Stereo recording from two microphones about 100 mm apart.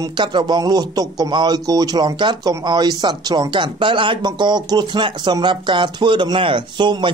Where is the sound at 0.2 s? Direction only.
50° right (ahead or behind).